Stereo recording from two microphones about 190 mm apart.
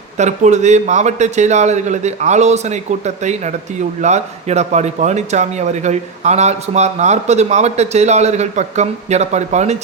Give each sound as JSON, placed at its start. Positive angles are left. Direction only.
{"t": 0.2, "sound": "speech", "side_deg": -40}